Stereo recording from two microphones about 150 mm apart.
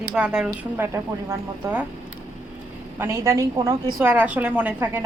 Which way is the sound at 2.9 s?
15° right (ahead or behind).